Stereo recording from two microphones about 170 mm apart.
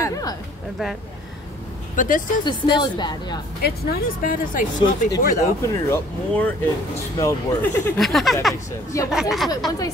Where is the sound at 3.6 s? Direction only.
70° left (ahead or behind); by 5.0 s 50° left (ahead or behind).